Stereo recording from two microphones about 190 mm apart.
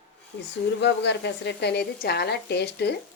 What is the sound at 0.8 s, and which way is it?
A woman's voice, 65° left (ahead or behind).